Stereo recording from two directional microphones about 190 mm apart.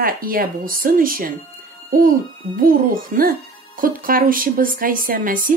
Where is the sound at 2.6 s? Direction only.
50° right (ahead or behind).